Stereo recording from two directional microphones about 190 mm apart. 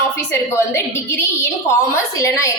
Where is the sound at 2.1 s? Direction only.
15° left (ahead or behind).